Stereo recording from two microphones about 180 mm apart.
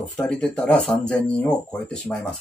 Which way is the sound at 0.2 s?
5° left (ahead or behind).